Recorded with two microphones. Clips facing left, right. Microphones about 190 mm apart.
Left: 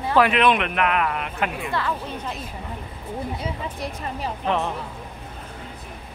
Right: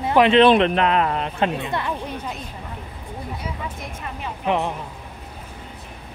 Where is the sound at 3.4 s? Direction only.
35° left (ahead or behind).